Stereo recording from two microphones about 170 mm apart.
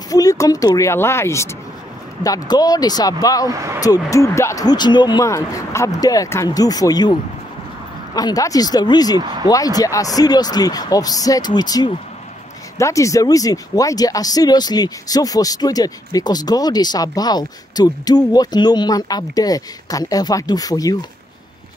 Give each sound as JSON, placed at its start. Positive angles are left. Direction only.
{"t": 0.1, "sound": "speech", "side_deg": 20}
{"t": 3.4, "sound": "speech", "side_deg": -20}
{"t": 3.8, "sound": "speech", "side_deg": 20}
{"t": 9.2, "sound": "speech", "side_deg": -25}
{"t": 9.5, "sound": "speech", "side_deg": 20}